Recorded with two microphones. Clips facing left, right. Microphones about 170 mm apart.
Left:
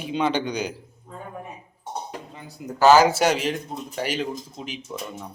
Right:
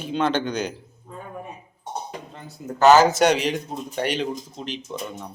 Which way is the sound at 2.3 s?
5° left (ahead or behind).